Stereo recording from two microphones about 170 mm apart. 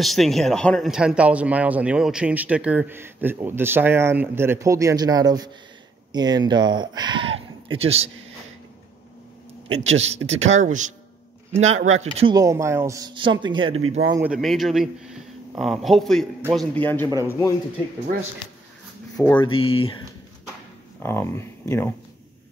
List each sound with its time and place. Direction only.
0.0 s speech: centre (ahead or behind); by 8.1 s 35° right (ahead or behind)
9.7 s speech: 40° right (ahead or behind)
12.3 s speech: 20° right (ahead or behind)
14.1 s a man's voice: 10° right (ahead or behind); by 17.6 s 20° left (ahead or behind)
19.1 s speech: 10° left (ahead or behind)
19.4 s speech: 30° left (ahead or behind)
21.0 s speech: 15° left (ahead or behind)